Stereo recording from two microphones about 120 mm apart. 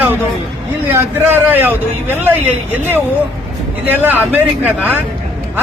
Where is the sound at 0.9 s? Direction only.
20° right (ahead or behind).